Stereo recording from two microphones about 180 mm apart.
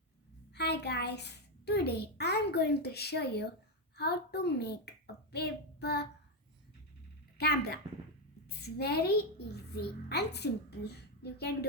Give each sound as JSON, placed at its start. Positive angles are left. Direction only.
{"t": 0.5, "sound": "a child's voice", "side_deg": 70}
{"t": 7.3, "sound": "a child's voice", "side_deg": 65}